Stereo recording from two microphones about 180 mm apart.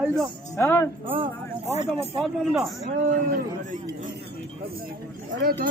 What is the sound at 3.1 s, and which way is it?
Speech, 45° right (ahead or behind).